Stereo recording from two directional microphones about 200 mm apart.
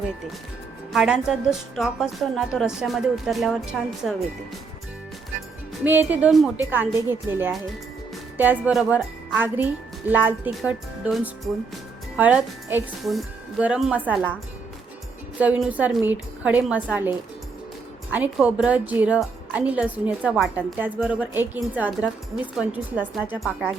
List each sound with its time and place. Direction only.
0.9 s a woman's voice: 5° right (ahead or behind)
5.8 s a woman's voice: 10° right (ahead or behind)
10.1 s a woman's voice: 10° right (ahead or behind)
15.4 s a woman's voice: 5° right (ahead or behind)
18.1 s a woman's voice: 5° right (ahead or behind)